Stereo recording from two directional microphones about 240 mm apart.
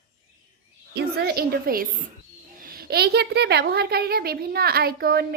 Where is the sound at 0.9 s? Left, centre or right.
Right.